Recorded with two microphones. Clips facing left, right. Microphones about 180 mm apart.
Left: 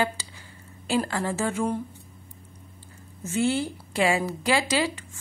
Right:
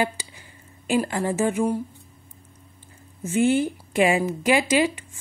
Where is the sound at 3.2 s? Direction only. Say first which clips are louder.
Right 5 dB; 15° right (ahead or behind).